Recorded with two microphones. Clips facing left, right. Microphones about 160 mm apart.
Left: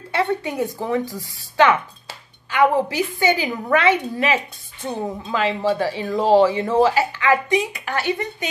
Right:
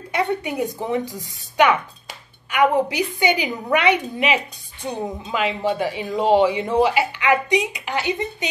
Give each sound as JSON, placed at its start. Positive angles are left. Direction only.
{"t": 0.1, "sound": "speech", "side_deg": -15}